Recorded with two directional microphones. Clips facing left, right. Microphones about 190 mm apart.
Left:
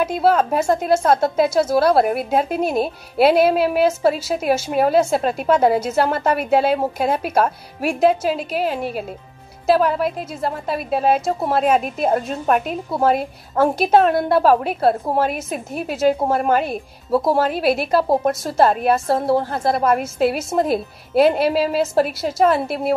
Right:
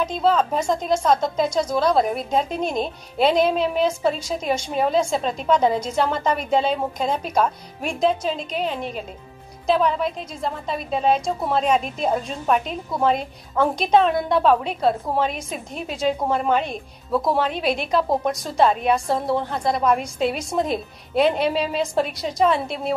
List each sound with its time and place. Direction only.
0.0 s a woman's voice: 10° left (ahead or behind)
17.1 s speech: 30° left (ahead or behind)
17.4 s a woman's voice: 5° left (ahead or behind)